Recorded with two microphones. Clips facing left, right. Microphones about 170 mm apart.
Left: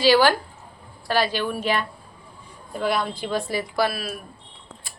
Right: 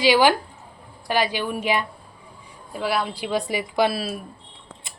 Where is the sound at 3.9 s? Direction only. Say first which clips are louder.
Right 4 dB; 30° right (ahead or behind).